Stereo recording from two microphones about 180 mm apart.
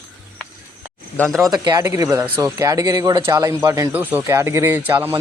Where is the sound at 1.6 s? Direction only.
25° right (ahead or behind).